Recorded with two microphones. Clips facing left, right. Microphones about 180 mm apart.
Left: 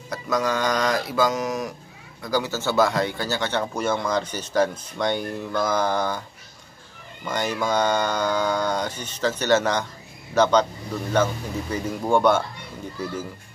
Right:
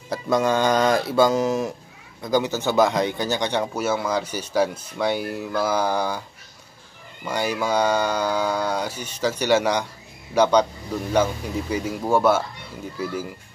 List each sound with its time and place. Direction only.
0.1 s speech: 25° right (ahead or behind); by 6.2 s 10° right (ahead or behind)
7.2 s speech: 10° right (ahead or behind)
11.7 s speech: 5° right (ahead or behind)